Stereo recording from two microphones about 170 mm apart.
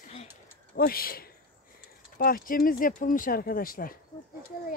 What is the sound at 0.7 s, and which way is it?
Speech, 60° left (ahead or behind).